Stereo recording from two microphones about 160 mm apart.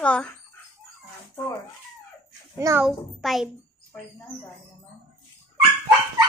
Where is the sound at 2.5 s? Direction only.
15° right (ahead or behind).